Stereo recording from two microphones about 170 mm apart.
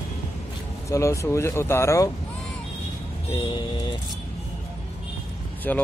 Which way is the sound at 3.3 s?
30° left (ahead or behind).